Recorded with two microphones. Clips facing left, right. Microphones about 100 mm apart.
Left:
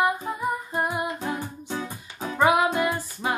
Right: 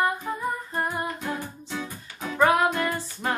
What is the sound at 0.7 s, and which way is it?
Humming, 10° left (ahead or behind).